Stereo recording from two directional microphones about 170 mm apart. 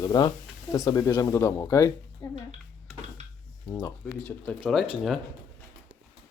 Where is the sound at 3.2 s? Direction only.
45° right (ahead or behind).